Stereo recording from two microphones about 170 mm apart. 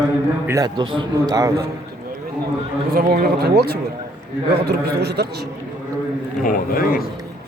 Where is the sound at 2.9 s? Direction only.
60° right (ahead or behind).